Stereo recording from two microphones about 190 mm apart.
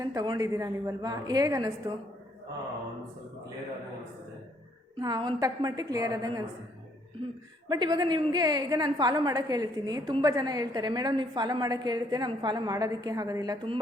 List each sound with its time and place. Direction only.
0.0 s a woman's voice: 20° right (ahead or behind)
4.9 s a woman's voice: 25° right (ahead or behind)
7.7 s a woman's voice: 20° right (ahead or behind)